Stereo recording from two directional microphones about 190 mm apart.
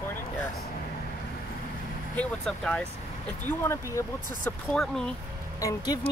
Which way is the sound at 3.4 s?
15° left (ahead or behind).